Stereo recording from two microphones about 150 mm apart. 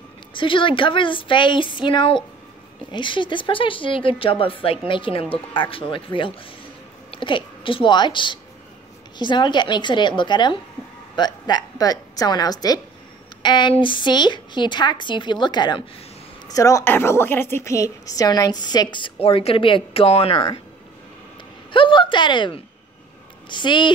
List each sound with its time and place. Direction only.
0.3 s a woman's voice: 35° left (ahead or behind)
21.7 s speech: 35° left (ahead or behind)